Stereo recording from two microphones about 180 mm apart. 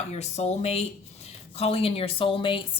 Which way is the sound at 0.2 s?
35° left (ahead or behind).